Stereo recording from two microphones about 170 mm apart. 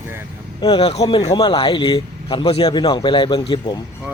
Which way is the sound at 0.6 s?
30° left (ahead or behind).